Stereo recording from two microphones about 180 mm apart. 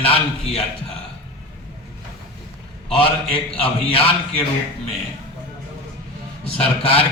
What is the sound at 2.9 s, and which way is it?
A man's voice, 30° left (ahead or behind).